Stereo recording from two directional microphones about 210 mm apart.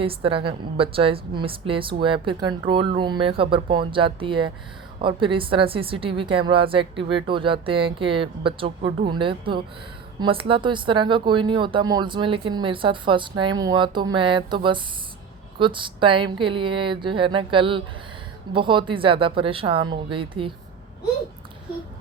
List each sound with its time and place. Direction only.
0.0 s speech: 25° right (ahead or behind)